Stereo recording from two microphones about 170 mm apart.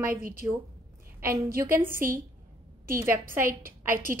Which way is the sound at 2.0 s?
55° right (ahead or behind).